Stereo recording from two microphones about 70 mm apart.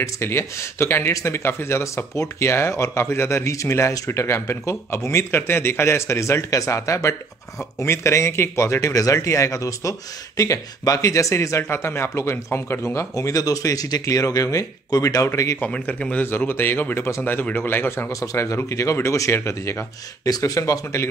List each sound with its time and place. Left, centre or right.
0.0 s speech: left
8.9 s speech: left
14.0 s speech: left
15.2 s speech: left
15.6 s speech: centre; by 18.0 s left
18.2 s speech: left
20.2 s speech: left